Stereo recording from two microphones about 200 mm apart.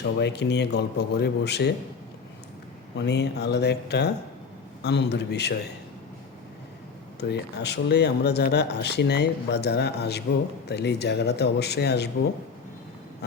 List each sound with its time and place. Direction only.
0.0 s speech: 60° left (ahead or behind)
3.0 s speech: 55° left (ahead or behind)
7.2 s speech: 55° left (ahead or behind)